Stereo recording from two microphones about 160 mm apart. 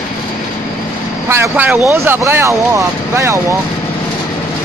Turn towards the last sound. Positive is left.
turn(degrees=-20)  # may be behind; listen again after turning